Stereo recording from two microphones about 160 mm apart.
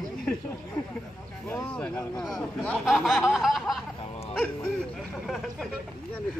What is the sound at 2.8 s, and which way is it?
Snicker, centre (ahead or behind).